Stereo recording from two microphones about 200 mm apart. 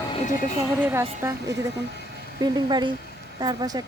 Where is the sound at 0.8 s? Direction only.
10° right (ahead or behind).